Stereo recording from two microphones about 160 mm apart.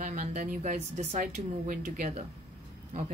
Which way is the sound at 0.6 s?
50° right (ahead or behind).